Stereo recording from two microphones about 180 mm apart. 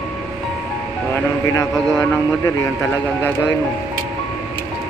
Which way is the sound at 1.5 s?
20° left (ahead or behind).